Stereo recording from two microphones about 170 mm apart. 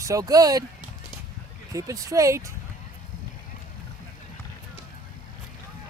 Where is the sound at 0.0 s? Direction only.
20° right (ahead or behind).